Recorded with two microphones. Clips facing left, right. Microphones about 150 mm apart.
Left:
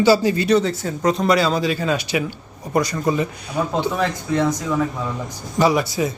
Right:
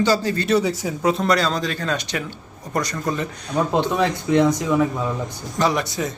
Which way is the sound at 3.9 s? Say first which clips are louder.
Right 3 dB; 20° right (ahead or behind).